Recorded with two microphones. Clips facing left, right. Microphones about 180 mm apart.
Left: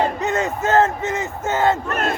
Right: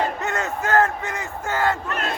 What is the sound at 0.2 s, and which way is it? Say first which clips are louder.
Crowd: left 4 dB; 20° left (ahead or behind).